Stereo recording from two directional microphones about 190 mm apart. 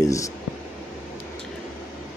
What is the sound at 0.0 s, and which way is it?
Speech, 15° left (ahead or behind).